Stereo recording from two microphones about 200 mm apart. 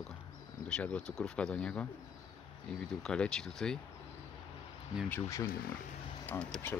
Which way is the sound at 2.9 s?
5° left (ahead or behind).